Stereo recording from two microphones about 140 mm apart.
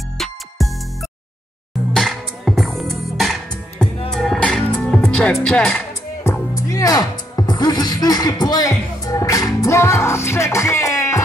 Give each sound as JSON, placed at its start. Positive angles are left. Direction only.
{"t": 2.0, "sound": "music", "side_deg": 0}
{"t": 6.2, "sound": "speech", "side_deg": 20}